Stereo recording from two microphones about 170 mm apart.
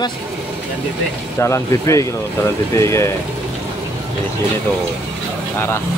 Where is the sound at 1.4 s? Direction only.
15° left (ahead or behind).